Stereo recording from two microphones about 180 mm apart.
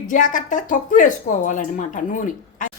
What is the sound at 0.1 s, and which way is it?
Speech, 45° left (ahead or behind).